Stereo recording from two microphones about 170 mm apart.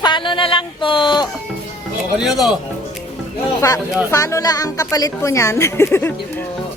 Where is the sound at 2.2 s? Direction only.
Centre (ahead or behind).